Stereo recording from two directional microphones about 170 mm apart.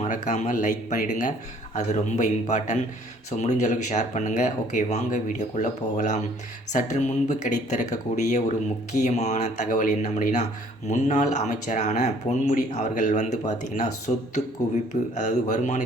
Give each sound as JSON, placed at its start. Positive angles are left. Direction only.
{"t": 0.0, "sound": "speech", "side_deg": 45}